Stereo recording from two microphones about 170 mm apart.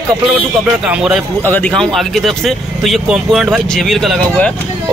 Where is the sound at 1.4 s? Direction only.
10° left (ahead or behind).